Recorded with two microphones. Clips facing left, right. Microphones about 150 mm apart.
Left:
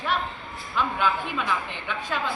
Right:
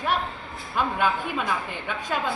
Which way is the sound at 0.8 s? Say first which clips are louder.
Right 1 dB; 50° right (ahead or behind).